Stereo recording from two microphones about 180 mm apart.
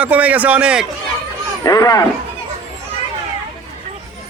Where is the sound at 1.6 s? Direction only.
20° left (ahead or behind).